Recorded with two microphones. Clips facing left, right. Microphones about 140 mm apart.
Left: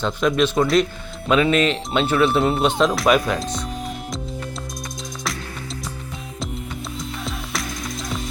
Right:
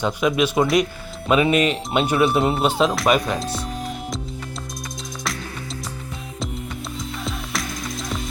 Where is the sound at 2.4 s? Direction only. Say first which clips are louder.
Left 1 dB; centre (ahead or behind).